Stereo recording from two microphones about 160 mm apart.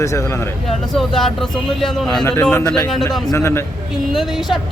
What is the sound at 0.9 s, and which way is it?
Speech, centre (ahead or behind).